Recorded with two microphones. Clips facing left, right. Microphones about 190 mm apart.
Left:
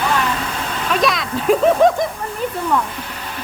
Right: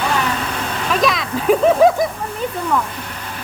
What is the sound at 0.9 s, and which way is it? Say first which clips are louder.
Speech: even; centre (ahead or behind).